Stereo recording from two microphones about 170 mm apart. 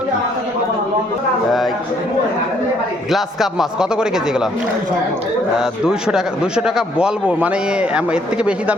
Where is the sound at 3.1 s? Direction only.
Centre (ahead or behind).